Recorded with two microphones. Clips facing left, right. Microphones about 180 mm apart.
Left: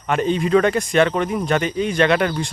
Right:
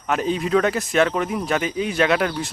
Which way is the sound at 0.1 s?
Centre (ahead or behind).